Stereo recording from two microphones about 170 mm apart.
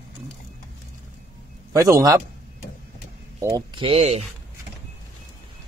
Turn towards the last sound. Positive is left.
turn(degrees=-35)  # may be behind; listen again after turning